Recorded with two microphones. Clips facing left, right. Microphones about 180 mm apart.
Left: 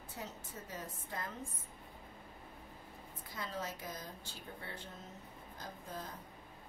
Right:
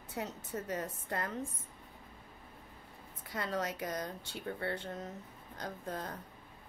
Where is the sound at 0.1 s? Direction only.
70° right (ahead or behind).